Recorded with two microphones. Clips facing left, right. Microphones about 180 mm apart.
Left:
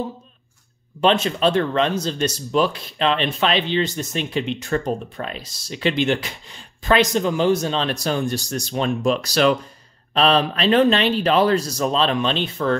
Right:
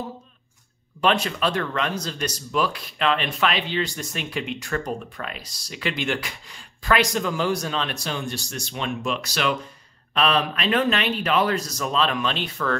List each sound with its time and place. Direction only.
1.0 s a man's voice: 25° left (ahead or behind)